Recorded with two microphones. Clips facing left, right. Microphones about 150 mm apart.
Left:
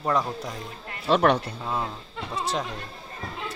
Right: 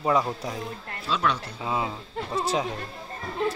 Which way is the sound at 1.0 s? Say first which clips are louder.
Left 7 dB; 55° left (ahead or behind).